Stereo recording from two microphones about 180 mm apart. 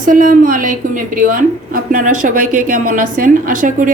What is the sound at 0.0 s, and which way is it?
A woman's voice, 50° right (ahead or behind).